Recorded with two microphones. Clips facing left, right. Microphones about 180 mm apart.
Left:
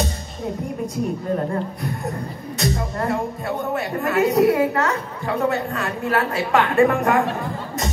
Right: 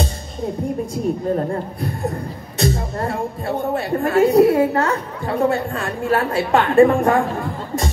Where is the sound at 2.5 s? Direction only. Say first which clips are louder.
Right 3 dB; 30° right (ahead or behind).